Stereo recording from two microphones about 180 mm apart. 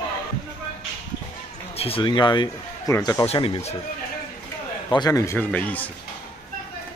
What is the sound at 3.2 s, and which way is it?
Speech, 30° left (ahead or behind).